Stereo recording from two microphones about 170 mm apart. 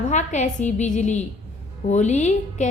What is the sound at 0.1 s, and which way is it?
A woman's voice, 45° left (ahead or behind).